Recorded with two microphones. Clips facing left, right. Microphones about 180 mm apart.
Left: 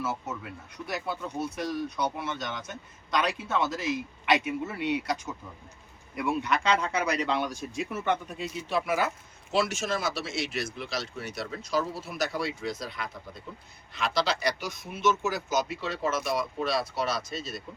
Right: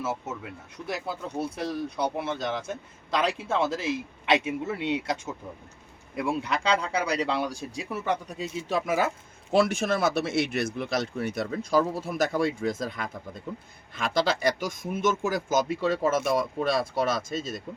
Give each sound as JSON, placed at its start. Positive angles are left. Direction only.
{"t": 0.9, "sound": "speech", "side_deg": -25}